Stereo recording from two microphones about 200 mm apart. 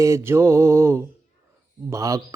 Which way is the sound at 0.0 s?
15° right (ahead or behind).